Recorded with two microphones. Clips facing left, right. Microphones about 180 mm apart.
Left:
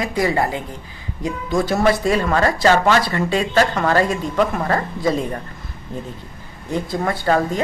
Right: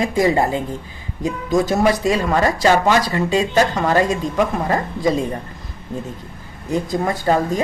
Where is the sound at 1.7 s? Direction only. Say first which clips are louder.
Left 3 dB; 15° right (ahead or behind).